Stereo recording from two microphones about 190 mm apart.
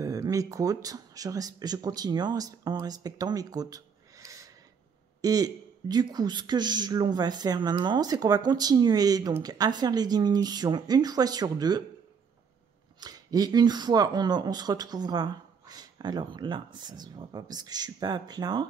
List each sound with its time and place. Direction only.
0.0 s speech: 20° right (ahead or behind)
13.0 s speech: 20° right (ahead or behind)